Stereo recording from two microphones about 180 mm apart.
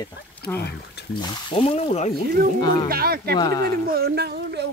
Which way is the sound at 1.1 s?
30° left (ahead or behind).